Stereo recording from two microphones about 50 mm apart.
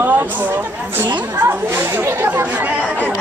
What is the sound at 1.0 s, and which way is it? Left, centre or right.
Speech, right.